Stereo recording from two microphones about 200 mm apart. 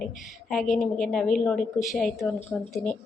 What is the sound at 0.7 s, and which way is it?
Speech, 40° left (ahead or behind).